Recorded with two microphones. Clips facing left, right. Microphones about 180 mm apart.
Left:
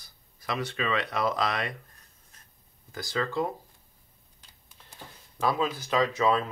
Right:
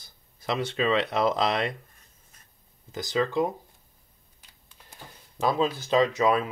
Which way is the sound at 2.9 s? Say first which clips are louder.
Right 4 dB; 20° right (ahead or behind).